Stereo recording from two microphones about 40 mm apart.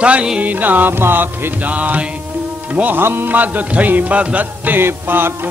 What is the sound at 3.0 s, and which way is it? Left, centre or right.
Speech, right.